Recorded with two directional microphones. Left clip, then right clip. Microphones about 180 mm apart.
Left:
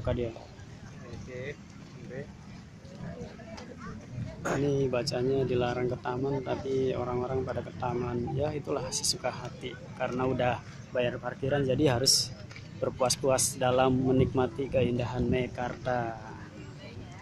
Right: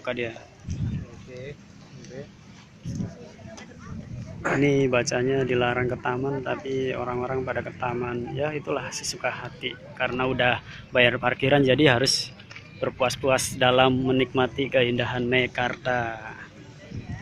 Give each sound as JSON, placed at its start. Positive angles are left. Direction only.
{"t": 0.0, "sound": "speech", "side_deg": 5}
{"t": 4.4, "sound": "speech", "side_deg": -45}
{"t": 4.9, "sound": "speech", "side_deg": -10}
{"t": 6.4, "sound": "speech", "side_deg": 0}
{"t": 7.0, "sound": "speech", "side_deg": -10}
{"t": 11.1, "sound": "speech", "side_deg": -25}